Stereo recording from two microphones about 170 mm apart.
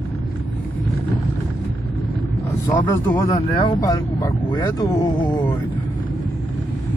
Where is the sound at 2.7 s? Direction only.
20° left (ahead or behind).